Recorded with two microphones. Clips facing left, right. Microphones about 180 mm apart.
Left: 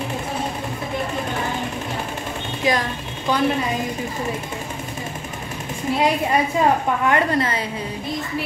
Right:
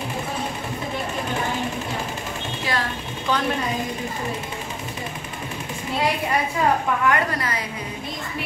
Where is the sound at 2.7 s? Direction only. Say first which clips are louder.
Left 6 dB; 15° left (ahead or behind).